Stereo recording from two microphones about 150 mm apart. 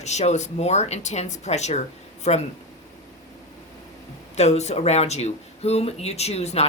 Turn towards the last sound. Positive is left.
turn(degrees=45)  # may be behind; listen again after turning